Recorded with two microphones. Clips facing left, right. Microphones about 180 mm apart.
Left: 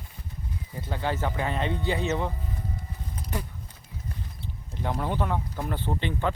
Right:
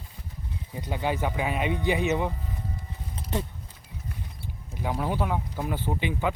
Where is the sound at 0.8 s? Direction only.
15° right (ahead or behind).